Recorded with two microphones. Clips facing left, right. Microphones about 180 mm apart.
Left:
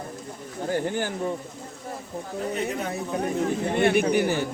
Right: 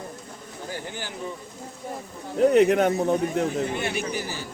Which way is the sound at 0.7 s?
50° left (ahead or behind).